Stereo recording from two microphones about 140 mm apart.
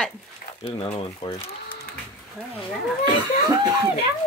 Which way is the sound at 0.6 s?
40° left (ahead or behind).